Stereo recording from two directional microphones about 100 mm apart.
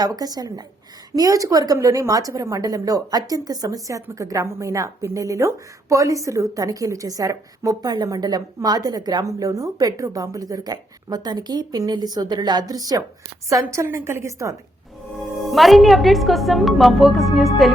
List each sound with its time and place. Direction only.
0.0 s a woman's voice: 40° right (ahead or behind)
15.5 s speech: centre (ahead or behind)